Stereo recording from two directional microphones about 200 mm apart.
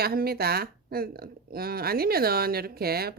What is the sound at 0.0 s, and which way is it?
Speech, 50° right (ahead or behind).